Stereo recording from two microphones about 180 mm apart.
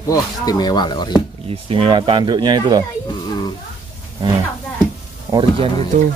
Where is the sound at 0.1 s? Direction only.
20° left (ahead or behind).